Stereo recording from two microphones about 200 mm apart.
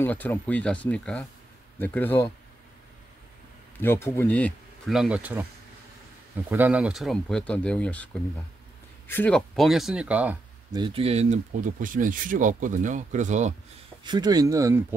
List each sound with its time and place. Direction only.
0.0 s speech: 10° left (ahead or behind)
3.8 s speech: 10° left (ahead or behind); by 5.4 s 5° right (ahead or behind)
6.5 s speech: 5° right (ahead or behind)
10.7 s speech: 25° right (ahead or behind)
14.0 s speech: 20° right (ahead or behind)